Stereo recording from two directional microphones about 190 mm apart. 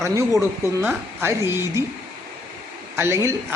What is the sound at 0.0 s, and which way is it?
Speech, 15° right (ahead or behind).